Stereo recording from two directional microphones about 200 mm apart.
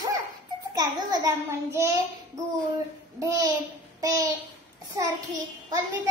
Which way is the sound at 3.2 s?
15° right (ahead or behind).